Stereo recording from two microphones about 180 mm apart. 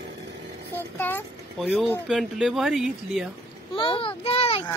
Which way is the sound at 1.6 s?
5° right (ahead or behind).